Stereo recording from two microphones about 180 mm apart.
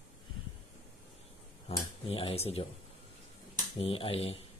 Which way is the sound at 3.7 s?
30° left (ahead or behind).